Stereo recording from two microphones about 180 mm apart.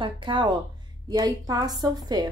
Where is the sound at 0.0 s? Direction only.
25° right (ahead or behind).